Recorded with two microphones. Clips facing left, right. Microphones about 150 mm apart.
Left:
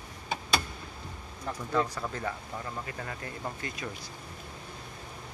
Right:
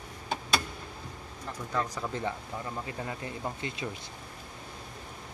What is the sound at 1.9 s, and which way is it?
Speech, 25° right (ahead or behind).